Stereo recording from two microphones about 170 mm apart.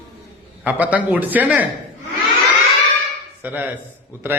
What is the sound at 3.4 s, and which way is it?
Speech, 10° right (ahead or behind).